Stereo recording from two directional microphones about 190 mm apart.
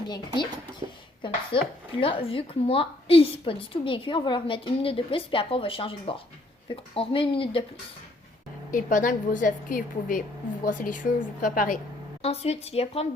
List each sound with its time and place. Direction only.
0.8 s speech: 25° right (ahead or behind)
1.5 s a woman's voice: 25° left (ahead or behind)
8.7 s a woman's voice: 45° left (ahead or behind)
12.2 s speech: 30° left (ahead or behind)